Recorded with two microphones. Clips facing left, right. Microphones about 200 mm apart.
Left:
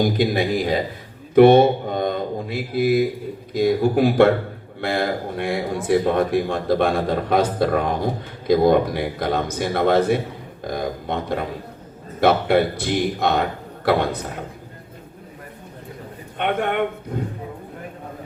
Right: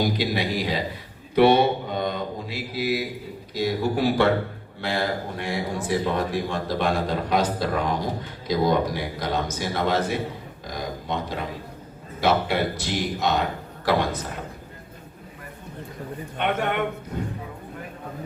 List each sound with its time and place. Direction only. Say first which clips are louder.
0.0 s speech: left 5 dB; 50° left (ahead or behind)
16.4 s speech: left 3 dB; 55° left (ahead or behind)